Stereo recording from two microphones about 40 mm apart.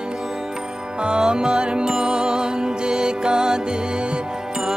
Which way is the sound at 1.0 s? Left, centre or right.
Right.